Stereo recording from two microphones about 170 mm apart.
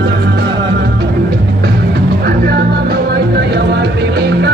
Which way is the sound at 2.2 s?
70° right (ahead or behind).